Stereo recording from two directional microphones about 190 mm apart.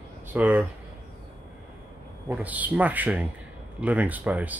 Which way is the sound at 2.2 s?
10° right (ahead or behind).